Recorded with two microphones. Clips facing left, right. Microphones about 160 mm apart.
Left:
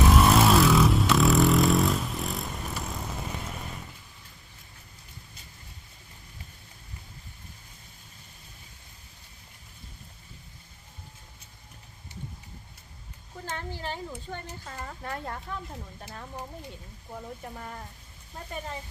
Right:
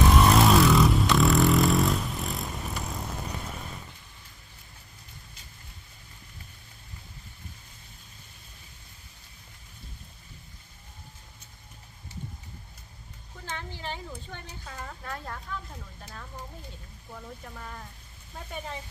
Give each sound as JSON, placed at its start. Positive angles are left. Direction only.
{"t": 0.0, "sound": "vehicle", "side_deg": 0}
{"t": 13.7, "sound": "a sound", "side_deg": 45}
{"t": 15.5, "sound": "speech", "side_deg": 35}